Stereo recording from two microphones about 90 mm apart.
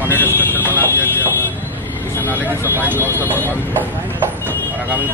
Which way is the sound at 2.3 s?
20° right (ahead or behind).